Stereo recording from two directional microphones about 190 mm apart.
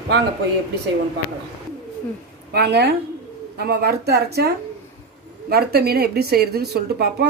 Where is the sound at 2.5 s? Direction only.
60° right (ahead or behind).